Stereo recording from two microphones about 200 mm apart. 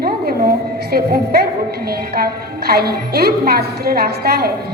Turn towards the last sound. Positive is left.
turn(degrees=-50)  # may be behind; listen again after turning